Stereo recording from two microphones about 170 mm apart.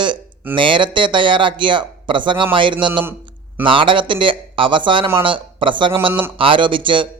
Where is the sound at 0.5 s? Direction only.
30° right (ahead or behind).